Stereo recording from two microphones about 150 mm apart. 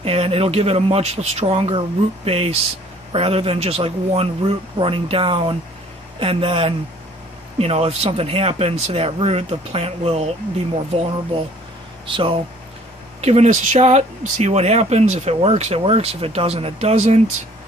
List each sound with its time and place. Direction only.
0.0 s speech: 40° right (ahead or behind)
12.1 s speech: 35° right (ahead or behind)
13.2 s speech: 45° right (ahead or behind)